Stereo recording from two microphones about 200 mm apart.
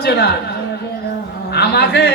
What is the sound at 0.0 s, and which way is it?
Speech, 55° left (ahead or behind).